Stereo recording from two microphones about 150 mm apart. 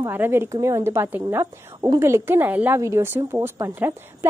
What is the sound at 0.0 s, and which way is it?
A woman's voice, 15° right (ahead or behind).